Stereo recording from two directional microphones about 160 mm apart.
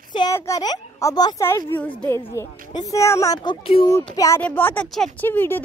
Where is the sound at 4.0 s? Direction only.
20° left (ahead or behind).